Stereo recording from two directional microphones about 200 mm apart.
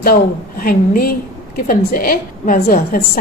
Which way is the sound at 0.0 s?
45° left (ahead or behind).